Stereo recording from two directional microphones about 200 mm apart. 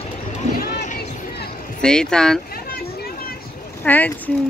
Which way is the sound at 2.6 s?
50° left (ahead or behind).